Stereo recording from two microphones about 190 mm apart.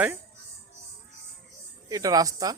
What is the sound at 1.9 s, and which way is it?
Speech, 20° right (ahead or behind).